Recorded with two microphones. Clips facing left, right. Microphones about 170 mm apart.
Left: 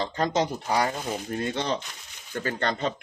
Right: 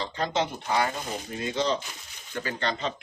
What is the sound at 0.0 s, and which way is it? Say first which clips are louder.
Speech: left 3 dB; 45° left (ahead or behind).